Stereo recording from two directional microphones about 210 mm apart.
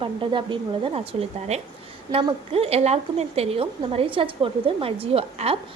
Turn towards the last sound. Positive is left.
turn(degrees=-30)  # may be behind; listen again after turning